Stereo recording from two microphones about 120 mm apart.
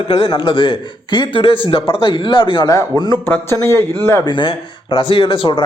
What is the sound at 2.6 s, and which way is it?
Speech, 30° left (ahead or behind).